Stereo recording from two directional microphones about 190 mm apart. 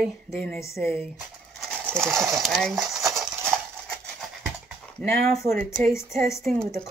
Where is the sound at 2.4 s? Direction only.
Centre (ahead or behind).